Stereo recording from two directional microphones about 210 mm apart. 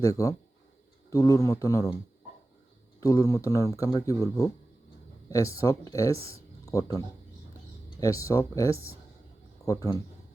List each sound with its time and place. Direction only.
0.0 s speech: 15° left (ahead or behind)
3.0 s speech: 15° left (ahead or behind)
8.0 s speech: 15° left (ahead or behind)